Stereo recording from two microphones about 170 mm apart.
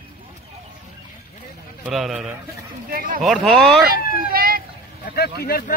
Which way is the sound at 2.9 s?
60° right (ahead or behind).